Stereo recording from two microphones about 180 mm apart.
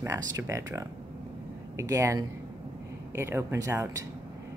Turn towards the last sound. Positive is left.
turn(degrees=-15)  # may be behind; listen again after turning